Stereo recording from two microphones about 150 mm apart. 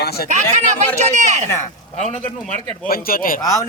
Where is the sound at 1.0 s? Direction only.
50° right (ahead or behind).